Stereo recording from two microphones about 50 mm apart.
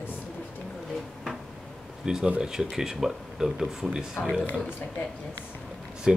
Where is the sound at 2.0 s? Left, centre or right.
Centre.